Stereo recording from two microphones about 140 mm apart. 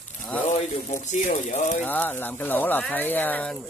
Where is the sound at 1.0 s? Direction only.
55° left (ahead or behind).